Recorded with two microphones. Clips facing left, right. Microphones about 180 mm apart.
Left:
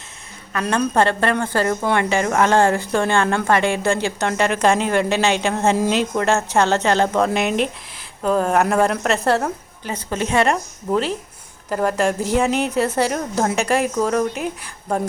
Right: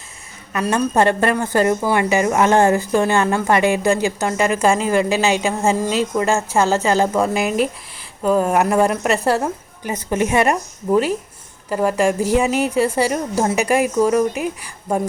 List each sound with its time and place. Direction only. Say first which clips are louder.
0.5 s a woman's voice: right 1 dB; 5° right (ahead or behind)
1.8 s a woman's voice: right 2 dB; 5° right (ahead or behind)
2.5 s a woman's voice: right 2 dB; 20° right (ahead or behind)
2.9 s a woman's voice: right 2 dB; 5° right (ahead or behind)